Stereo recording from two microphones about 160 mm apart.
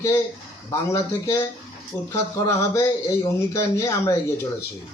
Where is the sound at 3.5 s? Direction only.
20° left (ahead or behind).